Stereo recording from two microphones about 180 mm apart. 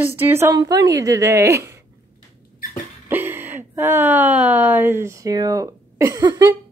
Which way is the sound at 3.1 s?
10° right (ahead or behind).